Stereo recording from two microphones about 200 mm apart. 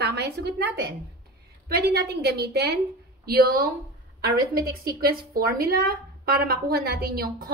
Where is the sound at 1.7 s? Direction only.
55° right (ahead or behind).